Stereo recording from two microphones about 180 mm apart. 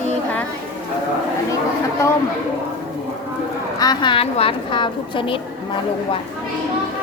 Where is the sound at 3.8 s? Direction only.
25° left (ahead or behind).